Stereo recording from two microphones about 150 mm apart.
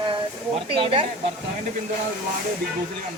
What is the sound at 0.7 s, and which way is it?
Speech, 35° right (ahead or behind).